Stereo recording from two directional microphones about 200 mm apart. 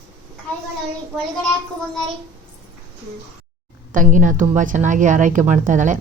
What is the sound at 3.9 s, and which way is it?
A woman's voice, 40° right (ahead or behind).